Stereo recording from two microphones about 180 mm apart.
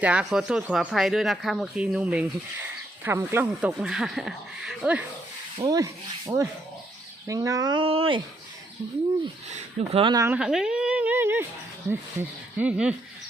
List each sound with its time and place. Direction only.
0.0 s speech: 5° right (ahead or behind)
5.5 s speech: 20° right (ahead or behind)
9.5 s speech: 40° right (ahead or behind)
10.2 s speech: 10° right (ahead or behind)
12.5 s speech: 5° right (ahead or behind)